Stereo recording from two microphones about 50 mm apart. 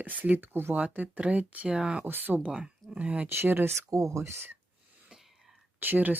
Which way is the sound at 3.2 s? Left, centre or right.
Right.